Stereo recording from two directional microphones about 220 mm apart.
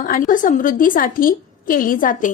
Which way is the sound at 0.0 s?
35° left (ahead or behind).